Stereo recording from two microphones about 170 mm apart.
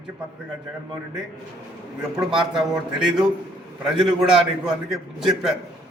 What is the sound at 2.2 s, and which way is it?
Speech, 5° right (ahead or behind).